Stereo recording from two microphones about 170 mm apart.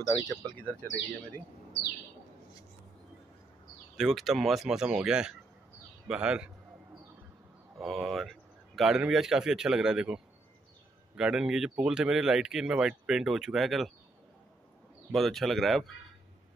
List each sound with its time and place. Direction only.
0.0 s speech: 20° left (ahead or behind)
0.6 s speech: 10° left (ahead or behind)
3.9 s speech: centre (ahead or behind)
7.8 s speech: centre (ahead or behind)
15.1 s speech: centre (ahead or behind)